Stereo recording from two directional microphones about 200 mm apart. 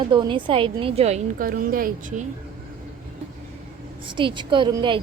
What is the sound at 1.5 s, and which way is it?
Speech, 45° right (ahead or behind).